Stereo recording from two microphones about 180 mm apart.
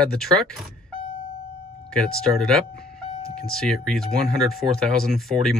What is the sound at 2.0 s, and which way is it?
Speech, 5° left (ahead or behind).